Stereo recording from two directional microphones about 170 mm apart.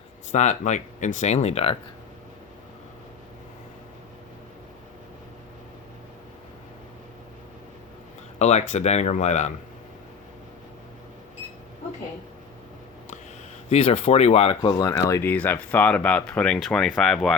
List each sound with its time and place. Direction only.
0.3 s speech: 45° left (ahead or behind)
8.4 s speech: 40° left (ahead or behind)
13.7 s speech: 35° left (ahead or behind)
14.7 s speech: 20° left (ahead or behind); by 17.3 s centre (ahead or behind)